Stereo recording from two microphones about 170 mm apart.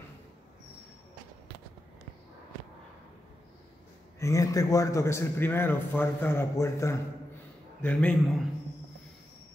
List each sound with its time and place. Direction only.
4.2 s a man's voice: 20° left (ahead or behind)
7.8 s a man's voice: 5° left (ahead or behind)